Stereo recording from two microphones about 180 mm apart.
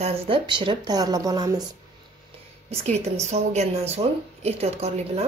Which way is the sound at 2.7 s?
35° right (ahead or behind).